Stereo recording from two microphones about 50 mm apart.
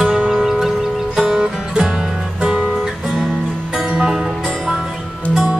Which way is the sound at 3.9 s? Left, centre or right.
Centre.